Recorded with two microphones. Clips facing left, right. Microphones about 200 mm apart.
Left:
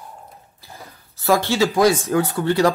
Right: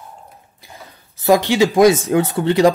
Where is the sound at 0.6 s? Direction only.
15° right (ahead or behind).